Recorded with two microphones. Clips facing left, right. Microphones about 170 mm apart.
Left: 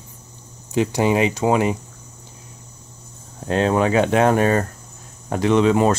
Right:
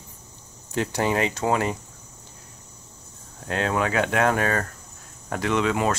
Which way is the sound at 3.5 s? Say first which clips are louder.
Left 7 dB; 25° left (ahead or behind).